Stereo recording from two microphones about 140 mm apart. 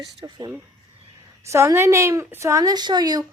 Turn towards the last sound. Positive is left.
turn(degrees=-25)  # may be behind; listen again after turning